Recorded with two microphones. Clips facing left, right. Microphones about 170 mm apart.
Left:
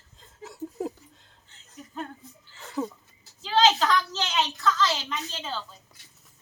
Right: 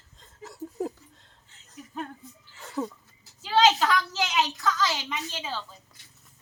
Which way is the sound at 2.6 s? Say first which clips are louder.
Left 1 dB; centre (ahead or behind).